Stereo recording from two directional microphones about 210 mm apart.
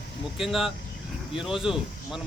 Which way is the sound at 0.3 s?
Centre (ahead or behind).